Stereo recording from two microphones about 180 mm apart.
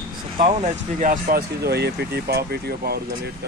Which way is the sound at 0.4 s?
50° right (ahead or behind).